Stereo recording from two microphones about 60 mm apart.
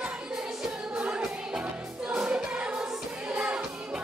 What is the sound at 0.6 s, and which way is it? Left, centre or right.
Music, centre.